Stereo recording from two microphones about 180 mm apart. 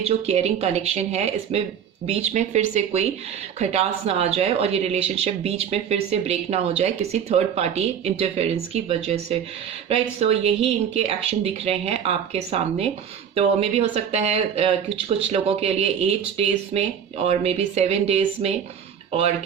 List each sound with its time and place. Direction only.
0.0 s speech: 35° right (ahead or behind)